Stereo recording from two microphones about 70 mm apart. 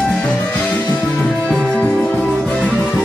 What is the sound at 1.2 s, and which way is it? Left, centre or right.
Music, centre.